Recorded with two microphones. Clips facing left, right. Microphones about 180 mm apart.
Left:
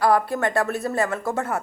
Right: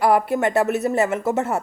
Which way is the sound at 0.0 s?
20° right (ahead or behind).